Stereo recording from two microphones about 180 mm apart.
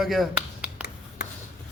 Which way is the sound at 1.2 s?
65° left (ahead or behind).